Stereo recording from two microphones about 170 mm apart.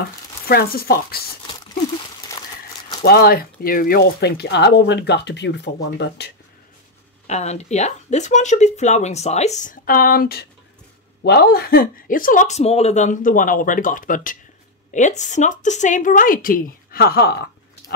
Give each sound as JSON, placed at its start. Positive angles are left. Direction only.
{"t": 0.5, "sound": "speech", "side_deg": 65}
{"t": 2.3, "sound": "a sound", "side_deg": 15}
{"t": 3.0, "sound": "speech", "side_deg": 65}
{"t": 7.2, "sound": "speech", "side_deg": 40}